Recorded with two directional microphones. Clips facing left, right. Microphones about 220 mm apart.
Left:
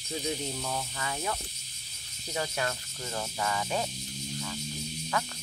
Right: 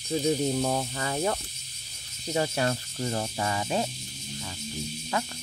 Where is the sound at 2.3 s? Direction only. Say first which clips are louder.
Right 6 dB; 30° right (ahead or behind).